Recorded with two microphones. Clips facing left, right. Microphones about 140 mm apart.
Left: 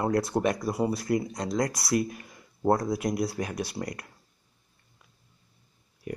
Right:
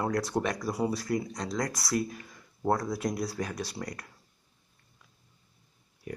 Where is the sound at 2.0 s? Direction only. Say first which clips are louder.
Left 2 dB; 15° left (ahead or behind).